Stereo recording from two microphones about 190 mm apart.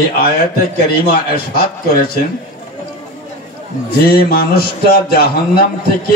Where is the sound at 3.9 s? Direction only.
50° left (ahead or behind).